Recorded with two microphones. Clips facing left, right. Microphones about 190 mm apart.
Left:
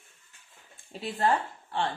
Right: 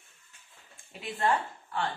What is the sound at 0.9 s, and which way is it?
Speech, 30° left (ahead or behind).